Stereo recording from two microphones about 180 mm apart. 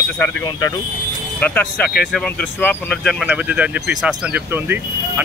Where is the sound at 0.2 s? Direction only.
15° left (ahead or behind).